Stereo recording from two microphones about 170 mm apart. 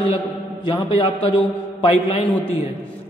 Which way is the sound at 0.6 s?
35° left (ahead or behind).